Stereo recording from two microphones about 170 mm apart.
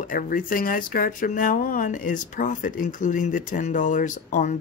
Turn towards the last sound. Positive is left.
turn(degrees=45)  # may be behind; listen again after turning